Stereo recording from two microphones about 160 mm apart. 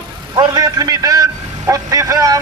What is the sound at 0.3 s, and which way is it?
A man's voice, 25° right (ahead or behind).